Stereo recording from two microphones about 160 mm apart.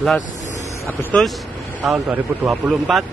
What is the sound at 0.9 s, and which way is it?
A man's voice, 10° left (ahead or behind).